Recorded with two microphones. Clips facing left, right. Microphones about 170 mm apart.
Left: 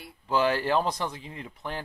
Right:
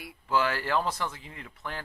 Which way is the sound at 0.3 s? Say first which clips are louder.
Left 3 dB; 20° left (ahead or behind).